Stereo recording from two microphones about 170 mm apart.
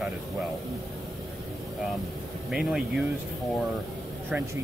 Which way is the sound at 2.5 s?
Centre (ahead or behind).